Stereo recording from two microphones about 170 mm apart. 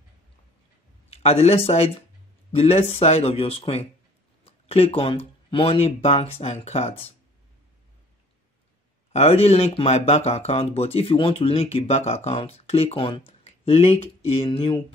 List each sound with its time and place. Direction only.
1.1 s speech: 35° left (ahead or behind)
9.1 s speech: 40° left (ahead or behind)